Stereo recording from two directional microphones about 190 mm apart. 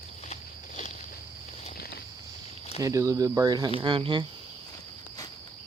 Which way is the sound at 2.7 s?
15° right (ahead or behind).